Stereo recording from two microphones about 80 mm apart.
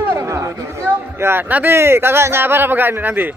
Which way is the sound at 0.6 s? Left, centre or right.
Right.